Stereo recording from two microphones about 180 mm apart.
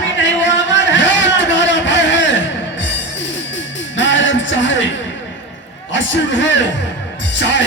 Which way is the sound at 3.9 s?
90° left.